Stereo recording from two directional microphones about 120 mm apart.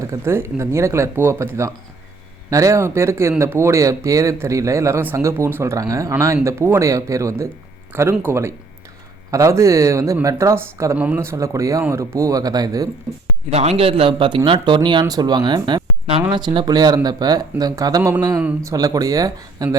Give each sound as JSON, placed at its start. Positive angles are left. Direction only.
{"t": 0.1, "sound": "speech", "side_deg": -20}
{"t": 10.9, "sound": "speech", "side_deg": -15}
{"t": 13.5, "sound": "speech", "side_deg": -60}